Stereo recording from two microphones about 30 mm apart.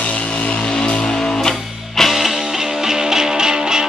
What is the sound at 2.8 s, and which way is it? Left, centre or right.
Music, right.